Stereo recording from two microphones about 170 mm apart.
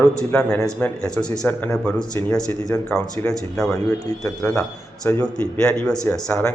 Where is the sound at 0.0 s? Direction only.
5° left (ahead or behind).